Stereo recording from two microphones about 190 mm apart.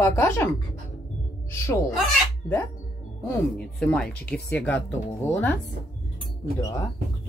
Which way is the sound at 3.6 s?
5° left (ahead or behind).